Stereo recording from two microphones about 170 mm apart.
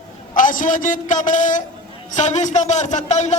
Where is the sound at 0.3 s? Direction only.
50° left (ahead or behind).